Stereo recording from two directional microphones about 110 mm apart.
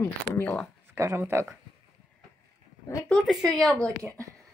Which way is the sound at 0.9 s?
25° right (ahead or behind).